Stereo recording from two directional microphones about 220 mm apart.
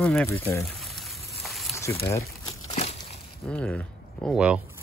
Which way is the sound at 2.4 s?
30° left (ahead or behind).